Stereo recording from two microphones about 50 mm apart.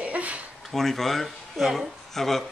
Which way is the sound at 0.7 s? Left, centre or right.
Centre.